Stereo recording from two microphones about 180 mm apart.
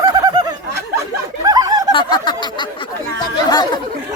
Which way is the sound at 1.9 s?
25° left (ahead or behind).